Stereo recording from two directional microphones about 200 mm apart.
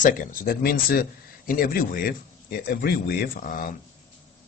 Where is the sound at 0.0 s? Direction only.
40° left (ahead or behind).